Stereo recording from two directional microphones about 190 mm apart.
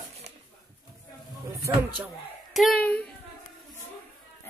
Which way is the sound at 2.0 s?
Centre (ahead or behind).